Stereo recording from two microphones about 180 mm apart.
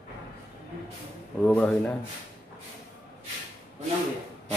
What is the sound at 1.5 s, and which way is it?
Speech, 5° left (ahead or behind).